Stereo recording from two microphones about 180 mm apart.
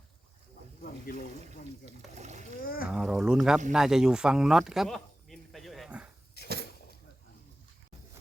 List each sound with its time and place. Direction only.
0.8 s boat: 50° left (ahead or behind)
2.1 s a child's voice: 40° right (ahead or behind)
2.6 s a sound: 55° left (ahead or behind)
2.9 s a sound: 5° right (ahead or behind)
3.7 s speech: 5° right (ahead or behind)
6.4 s cupboard open or close: 65° left (ahead or behind)